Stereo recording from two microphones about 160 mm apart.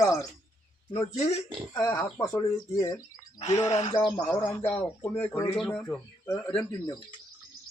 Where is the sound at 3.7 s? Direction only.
35° left (ahead or behind).